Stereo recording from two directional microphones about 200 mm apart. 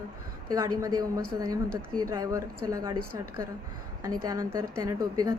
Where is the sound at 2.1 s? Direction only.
15° right (ahead or behind).